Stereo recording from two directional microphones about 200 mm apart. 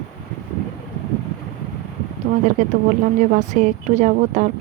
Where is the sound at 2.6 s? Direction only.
40° right (ahead or behind).